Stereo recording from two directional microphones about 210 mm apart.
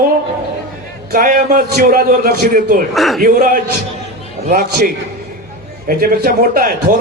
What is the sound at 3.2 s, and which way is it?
A man's voice, 40° right (ahead or behind).